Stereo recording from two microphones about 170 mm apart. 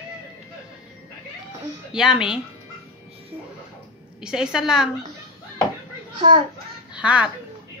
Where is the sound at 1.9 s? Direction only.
5° right (ahead or behind).